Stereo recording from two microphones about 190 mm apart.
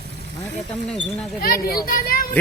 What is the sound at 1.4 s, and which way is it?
Speech, 50° left (ahead or behind).